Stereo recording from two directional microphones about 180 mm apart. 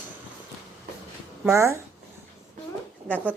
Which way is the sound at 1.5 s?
15° right (ahead or behind).